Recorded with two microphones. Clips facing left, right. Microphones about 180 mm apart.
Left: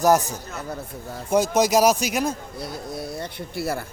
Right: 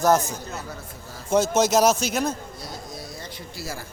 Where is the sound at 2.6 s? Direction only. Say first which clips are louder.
Left 5 dB; 60° left (ahead or behind).